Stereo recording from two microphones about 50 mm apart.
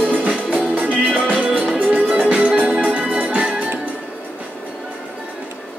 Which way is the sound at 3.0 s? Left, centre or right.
Right.